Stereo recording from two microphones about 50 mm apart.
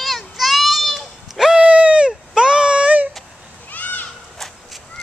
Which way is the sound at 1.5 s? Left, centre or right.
Centre.